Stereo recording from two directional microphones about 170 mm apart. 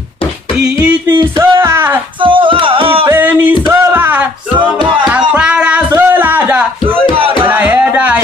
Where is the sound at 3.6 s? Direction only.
15° right (ahead or behind).